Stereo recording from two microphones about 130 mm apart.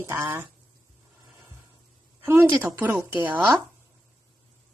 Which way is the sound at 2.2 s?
15° right (ahead or behind).